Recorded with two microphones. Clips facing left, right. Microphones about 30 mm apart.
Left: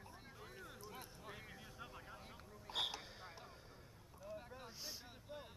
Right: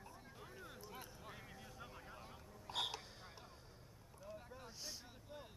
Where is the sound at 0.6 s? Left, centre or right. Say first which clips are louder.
Even; centre.